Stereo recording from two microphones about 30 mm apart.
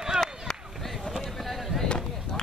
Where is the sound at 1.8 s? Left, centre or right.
Left.